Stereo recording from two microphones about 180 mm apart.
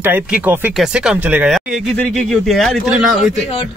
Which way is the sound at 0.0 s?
10° right (ahead or behind).